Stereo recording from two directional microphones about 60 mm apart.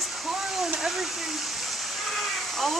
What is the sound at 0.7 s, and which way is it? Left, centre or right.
Waterfall, centre.